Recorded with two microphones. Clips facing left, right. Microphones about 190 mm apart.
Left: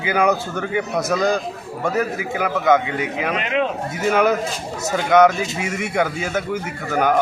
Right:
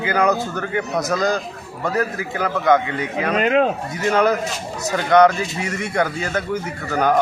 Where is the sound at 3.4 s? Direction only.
45° right (ahead or behind).